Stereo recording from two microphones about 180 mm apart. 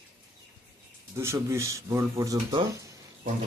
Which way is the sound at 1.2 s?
15° right (ahead or behind).